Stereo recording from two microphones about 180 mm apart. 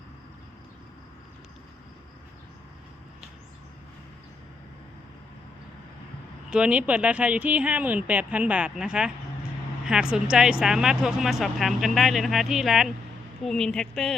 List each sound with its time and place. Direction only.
6.5 s speech: 5° right (ahead or behind)